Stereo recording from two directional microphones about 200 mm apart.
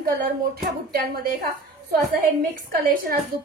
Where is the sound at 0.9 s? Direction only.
50° right (ahead or behind).